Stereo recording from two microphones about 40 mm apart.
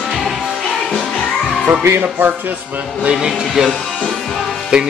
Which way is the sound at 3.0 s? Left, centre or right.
Right.